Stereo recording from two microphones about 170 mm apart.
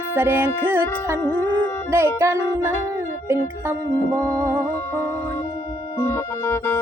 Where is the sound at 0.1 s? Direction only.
10° right (ahead or behind).